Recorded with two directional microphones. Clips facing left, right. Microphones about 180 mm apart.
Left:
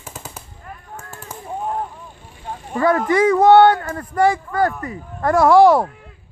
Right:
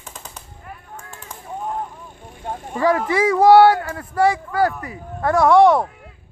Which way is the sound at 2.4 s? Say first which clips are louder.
Right 2 dB; 50° right (ahead or behind).